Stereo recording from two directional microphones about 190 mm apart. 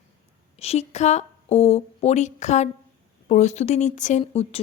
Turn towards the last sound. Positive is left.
turn(degrees=30)  # may be behind; listen again after turning